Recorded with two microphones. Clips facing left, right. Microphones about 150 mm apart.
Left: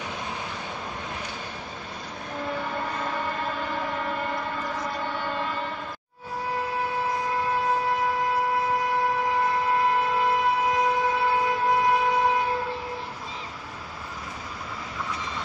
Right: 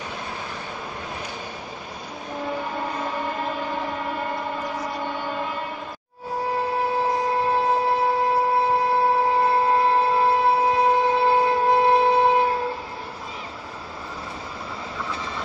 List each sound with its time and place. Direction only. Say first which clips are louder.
7.2 s wind instrument: right 4 dB; 30° right (ahead or behind)